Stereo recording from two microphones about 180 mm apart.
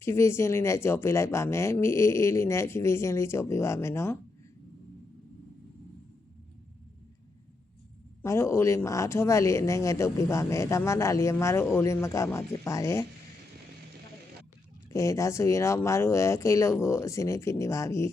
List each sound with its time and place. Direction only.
0.0 s speech: 15° left (ahead or behind)
8.2 s speech: 15° left (ahead or behind)
14.8 s speech: 15° left (ahead or behind)